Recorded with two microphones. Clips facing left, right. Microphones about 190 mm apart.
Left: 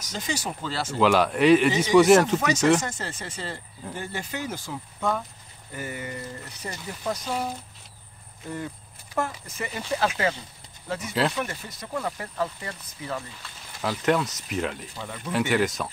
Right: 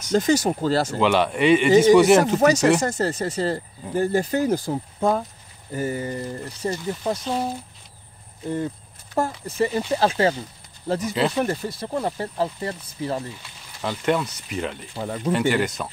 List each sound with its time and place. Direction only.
0.1 s speech: 45° right (ahead or behind)
0.9 s speech: centre (ahead or behind)
1.7 s speech: 45° right (ahead or behind)
2.0 s speech: centre (ahead or behind)
2.2 s speech: 40° right (ahead or behind)
8.5 s speech: 30° right (ahead or behind)
13.7 s speech: centre (ahead or behind)
15.0 s speech: 40° right (ahead or behind)
15.3 s speech: centre (ahead or behind)